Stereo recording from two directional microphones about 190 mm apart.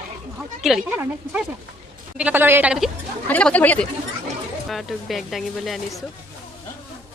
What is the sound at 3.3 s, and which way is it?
A woman's voice, 5° left (ahead or behind).